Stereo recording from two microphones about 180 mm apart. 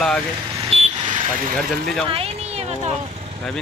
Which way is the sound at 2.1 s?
35° right (ahead or behind).